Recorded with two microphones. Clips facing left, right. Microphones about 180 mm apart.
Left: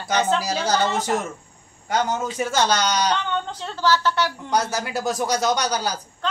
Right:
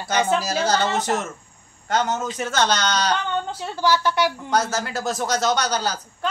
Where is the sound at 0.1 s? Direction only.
10° right (ahead or behind).